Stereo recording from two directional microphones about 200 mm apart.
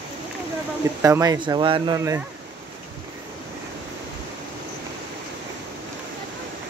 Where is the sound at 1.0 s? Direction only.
15° right (ahead or behind).